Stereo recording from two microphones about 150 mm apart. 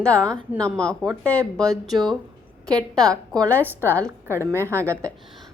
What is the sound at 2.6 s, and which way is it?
A woman's voice, 25° right (ahead or behind).